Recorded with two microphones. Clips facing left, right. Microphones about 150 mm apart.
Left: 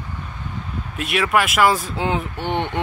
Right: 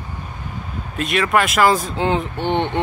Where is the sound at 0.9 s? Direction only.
10° left (ahead or behind).